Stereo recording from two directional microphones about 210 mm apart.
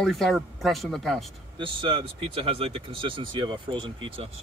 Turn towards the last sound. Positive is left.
turn(degrees=-25)  # may be behind; listen again after turning